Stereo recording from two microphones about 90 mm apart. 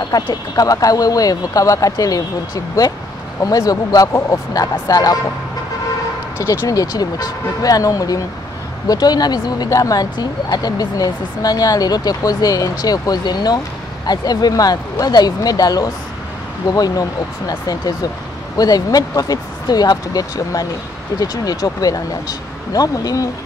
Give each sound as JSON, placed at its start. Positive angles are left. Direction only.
{"t": 0.1, "sound": "speech", "side_deg": 45}
{"t": 6.3, "sound": "speech", "side_deg": 35}